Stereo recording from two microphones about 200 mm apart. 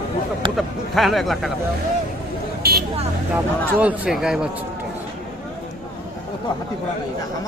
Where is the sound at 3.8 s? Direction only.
5° right (ahead or behind).